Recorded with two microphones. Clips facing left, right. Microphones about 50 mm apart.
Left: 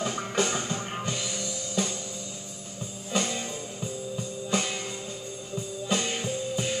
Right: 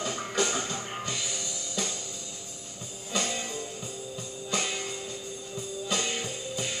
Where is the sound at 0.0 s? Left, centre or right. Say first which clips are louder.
Left 2 dB; left.